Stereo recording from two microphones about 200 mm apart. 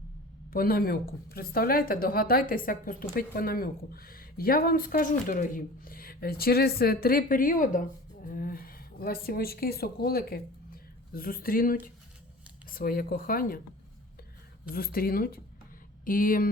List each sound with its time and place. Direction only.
0.5 s a woman's voice: 50° left (ahead or behind)
14.7 s a woman's voice: 50° left (ahead or behind)